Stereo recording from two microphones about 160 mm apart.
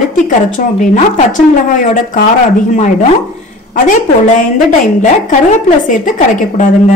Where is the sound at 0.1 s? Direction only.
55° left (ahead or behind).